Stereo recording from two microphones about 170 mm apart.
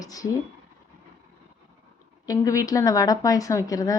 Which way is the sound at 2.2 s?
20° left (ahead or behind).